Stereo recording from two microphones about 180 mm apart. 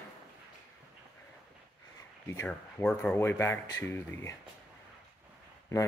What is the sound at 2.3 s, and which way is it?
Speech, 15° left (ahead or behind).